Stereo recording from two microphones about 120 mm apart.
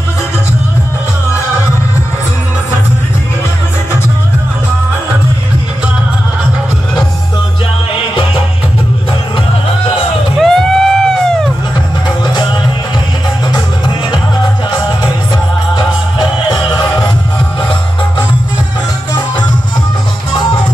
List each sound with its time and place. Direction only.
10.4 s a sound: 5° left (ahead or behind)
13.5 s music: 40° left (ahead or behind)
15.7 s music: 40° left (ahead or behind)